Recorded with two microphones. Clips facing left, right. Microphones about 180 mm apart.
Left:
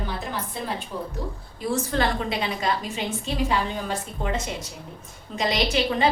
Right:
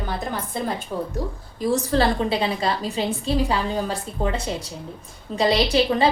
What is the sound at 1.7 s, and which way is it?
A woman's voice, 35° right (ahead or behind).